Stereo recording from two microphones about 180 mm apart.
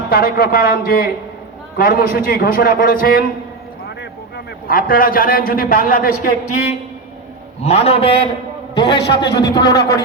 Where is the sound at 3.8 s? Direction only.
65° left (ahead or behind).